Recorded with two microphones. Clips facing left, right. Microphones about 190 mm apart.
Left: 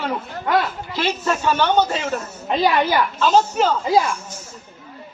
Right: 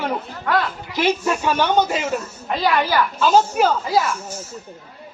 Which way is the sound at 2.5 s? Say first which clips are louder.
Left 2 dB; 25° left (ahead or behind).